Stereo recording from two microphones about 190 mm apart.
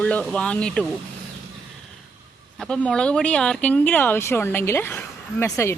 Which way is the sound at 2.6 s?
5° left (ahead or behind).